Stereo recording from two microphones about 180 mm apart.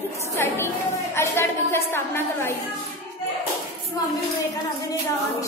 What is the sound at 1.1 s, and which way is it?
A woman's voice, 15° left (ahead or behind).